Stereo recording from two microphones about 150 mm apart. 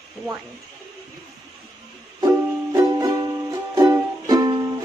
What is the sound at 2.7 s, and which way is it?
Music, 25° right (ahead or behind).